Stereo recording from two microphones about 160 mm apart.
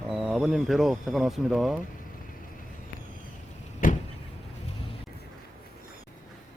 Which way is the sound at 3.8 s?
55° left (ahead or behind).